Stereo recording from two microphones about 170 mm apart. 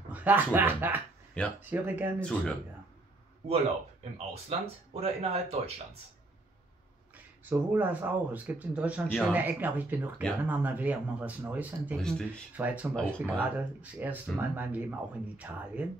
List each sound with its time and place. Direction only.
0.1 s speech: 10° right (ahead or behind)
1.4 s speech: 5° left (ahead or behind)
1.7 s speech: 10° right (ahead or behind)
2.1 s speech: 5° left (ahead or behind)
5.0 s speech: 35° right (ahead or behind)
7.4 s speech: 10° right (ahead or behind)
12.0 s speech: 5° left (ahead or behind)
12.5 s speech: 10° right (ahead or behind)